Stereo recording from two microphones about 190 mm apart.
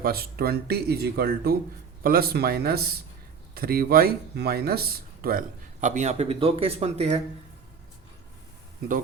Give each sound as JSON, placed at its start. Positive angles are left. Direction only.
{"t": 0.0, "sound": "speech", "side_deg": -55}